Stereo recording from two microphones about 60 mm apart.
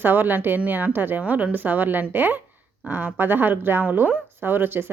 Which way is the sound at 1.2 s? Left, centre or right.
Right.